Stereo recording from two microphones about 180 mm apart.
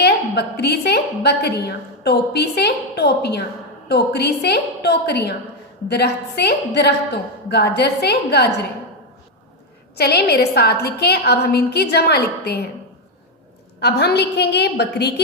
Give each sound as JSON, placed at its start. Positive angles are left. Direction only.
{"t": 0.0, "sound": "a woman's voice", "side_deg": 65}
{"t": 10.0, "sound": "a woman's voice", "side_deg": 65}
{"t": 13.7, "sound": "a woman's voice", "side_deg": 65}